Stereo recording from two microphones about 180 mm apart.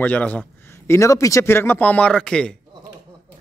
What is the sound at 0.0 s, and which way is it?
Speech, 10° left (ahead or behind).